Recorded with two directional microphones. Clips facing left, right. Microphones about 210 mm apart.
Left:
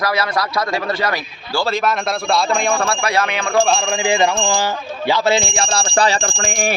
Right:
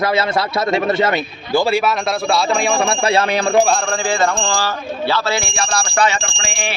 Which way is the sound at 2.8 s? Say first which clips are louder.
Right 3 dB; 25° right (ahead or behind).